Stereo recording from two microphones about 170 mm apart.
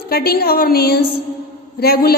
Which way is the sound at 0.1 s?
65° left (ahead or behind).